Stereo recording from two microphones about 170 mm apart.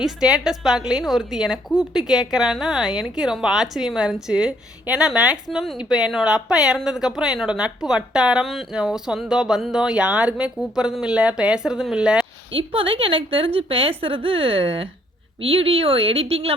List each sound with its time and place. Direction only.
0.0 s a woman's voice: 5° right (ahead or behind)
12.5 s a woman's voice: 30° right (ahead or behind)